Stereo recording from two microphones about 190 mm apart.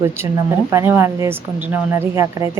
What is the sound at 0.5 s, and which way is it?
A woman's voice, 15° right (ahead or behind).